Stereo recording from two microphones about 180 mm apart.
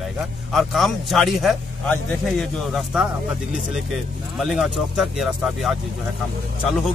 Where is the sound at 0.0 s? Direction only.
Centre (ahead or behind).